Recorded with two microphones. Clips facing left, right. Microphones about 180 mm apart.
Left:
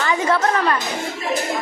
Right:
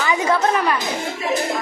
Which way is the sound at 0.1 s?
15° right (ahead or behind).